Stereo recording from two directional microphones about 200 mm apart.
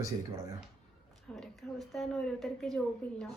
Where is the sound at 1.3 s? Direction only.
Centre (ahead or behind).